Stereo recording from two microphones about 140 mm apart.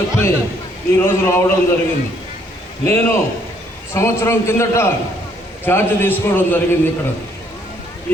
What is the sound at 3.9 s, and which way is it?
A man's voice, 20° left (ahead or behind).